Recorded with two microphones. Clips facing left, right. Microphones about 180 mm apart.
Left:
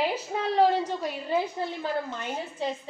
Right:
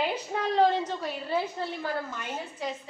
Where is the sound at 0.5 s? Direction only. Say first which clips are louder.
Left 1 dB; 10° left (ahead or behind).